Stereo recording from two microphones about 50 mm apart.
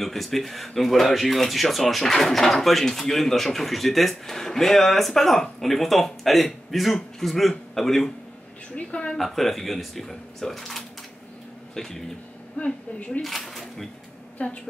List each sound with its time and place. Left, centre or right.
0.0 s speech: centre
8.7 s a woman's voice: left
9.1 s speech: centre
12.5 s a woman's voice: left
13.2 s speech: centre
14.4 s a woman's voice: left